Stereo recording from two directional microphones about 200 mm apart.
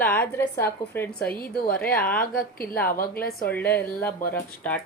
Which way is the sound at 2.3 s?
45° left (ahead or behind).